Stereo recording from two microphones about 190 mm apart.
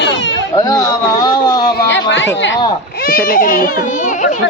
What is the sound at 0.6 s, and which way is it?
Speech, 20° left (ahead or behind).